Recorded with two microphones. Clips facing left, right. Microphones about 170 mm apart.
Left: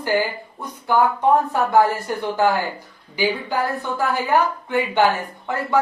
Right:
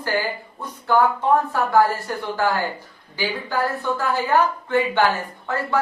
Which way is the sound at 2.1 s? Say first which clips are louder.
Left 3 dB; 15° left (ahead or behind).